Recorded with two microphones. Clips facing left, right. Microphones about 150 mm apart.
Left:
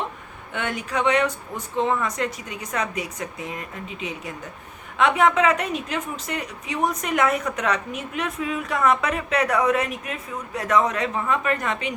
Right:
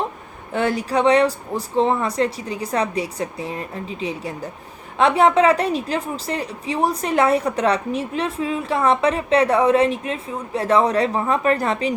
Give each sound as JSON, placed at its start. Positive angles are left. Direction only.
{"t": 0.5, "sound": "a woman's voice", "side_deg": -35}